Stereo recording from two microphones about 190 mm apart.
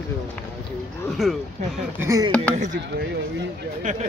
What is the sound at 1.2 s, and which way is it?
Speech, centre (ahead or behind).